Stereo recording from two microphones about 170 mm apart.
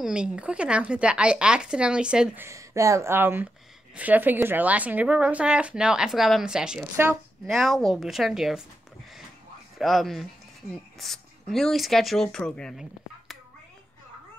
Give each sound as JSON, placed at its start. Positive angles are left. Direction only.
{"t": 0.0, "sound": "speech", "side_deg": -5}
{"t": 2.4, "sound": "speech", "side_deg": -20}
{"t": 9.8, "sound": "speech", "side_deg": 0}